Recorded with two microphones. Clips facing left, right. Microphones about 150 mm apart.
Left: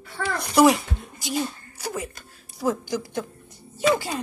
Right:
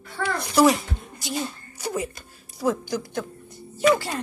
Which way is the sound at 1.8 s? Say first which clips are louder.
Right 3 dB; centre (ahead or behind).